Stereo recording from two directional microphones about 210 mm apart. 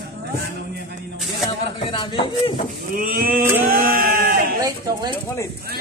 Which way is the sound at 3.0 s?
45° right (ahead or behind).